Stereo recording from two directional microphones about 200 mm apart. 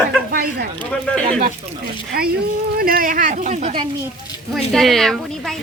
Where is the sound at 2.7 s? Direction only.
45° right (ahead or behind).